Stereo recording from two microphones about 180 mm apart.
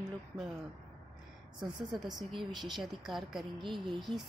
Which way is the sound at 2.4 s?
25° right (ahead or behind).